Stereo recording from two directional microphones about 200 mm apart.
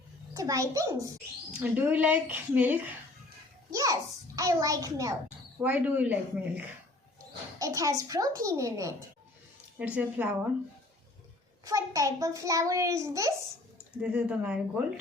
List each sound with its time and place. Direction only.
0.3 s a child's voice: 15° right (ahead or behind)
7.6 s a child's voice: 15° right (ahead or behind)
11.6 s a child's voice: 15° right (ahead or behind)
14.0 s speech: 5° right (ahead or behind)